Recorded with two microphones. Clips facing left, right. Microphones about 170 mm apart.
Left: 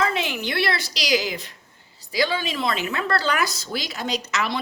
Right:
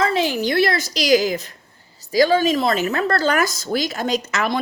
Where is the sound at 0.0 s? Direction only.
35° right (ahead or behind).